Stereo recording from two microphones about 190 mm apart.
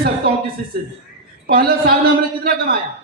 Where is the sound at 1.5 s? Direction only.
55° right (ahead or behind).